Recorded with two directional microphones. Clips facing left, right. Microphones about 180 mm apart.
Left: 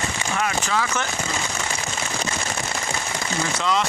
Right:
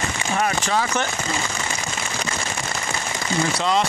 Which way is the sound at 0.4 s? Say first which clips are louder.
Right 2 dB; 35° right (ahead or behind).